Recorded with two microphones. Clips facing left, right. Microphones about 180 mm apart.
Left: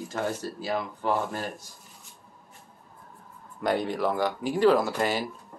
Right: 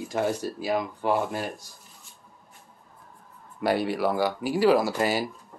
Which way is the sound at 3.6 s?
10° right (ahead or behind).